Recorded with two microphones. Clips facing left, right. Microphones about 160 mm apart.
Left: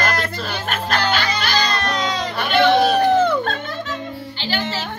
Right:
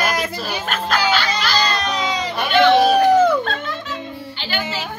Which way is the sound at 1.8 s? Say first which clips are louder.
Even; 5° right (ahead or behind).